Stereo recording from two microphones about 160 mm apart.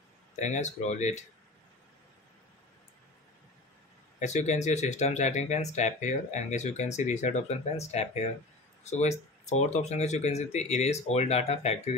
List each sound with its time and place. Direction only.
0.4 s speech: 50° left (ahead or behind)
4.2 s speech: 45° left (ahead or behind)
9.5 s speech: 45° left (ahead or behind)